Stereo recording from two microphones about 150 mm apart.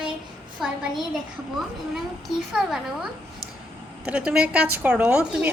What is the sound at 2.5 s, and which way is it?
Child singing, 5° right (ahead or behind).